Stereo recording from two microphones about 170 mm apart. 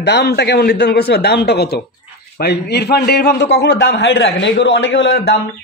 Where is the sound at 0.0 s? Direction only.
85° left.